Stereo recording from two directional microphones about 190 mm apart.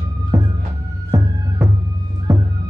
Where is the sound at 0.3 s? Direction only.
15° right (ahead or behind).